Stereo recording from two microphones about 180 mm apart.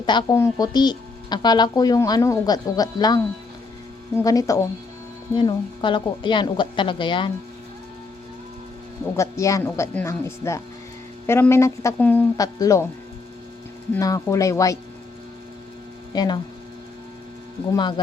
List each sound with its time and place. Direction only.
0.0 s speech: 25° left (ahead or behind)
4.2 s speech: 20° left (ahead or behind)
9.1 s speech: 15° left (ahead or behind)
13.9 s speech: 15° left (ahead or behind)
16.1 s speech: 25° left (ahead or behind)
17.7 s speech: 25° left (ahead or behind)